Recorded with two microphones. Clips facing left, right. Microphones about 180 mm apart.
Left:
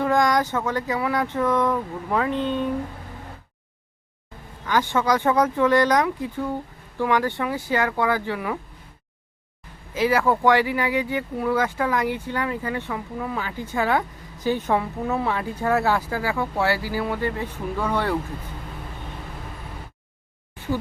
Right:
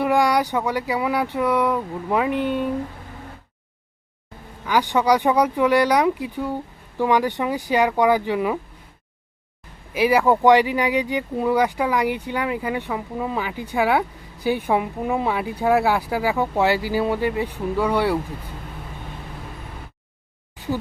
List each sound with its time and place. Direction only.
0.0 s speech: 10° right (ahead or behind)
4.6 s speech: 15° right (ahead or behind)
9.9 s speech: 15° right (ahead or behind)